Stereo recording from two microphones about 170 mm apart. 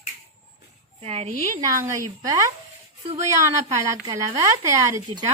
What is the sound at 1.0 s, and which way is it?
Speech, 40° right (ahead or behind).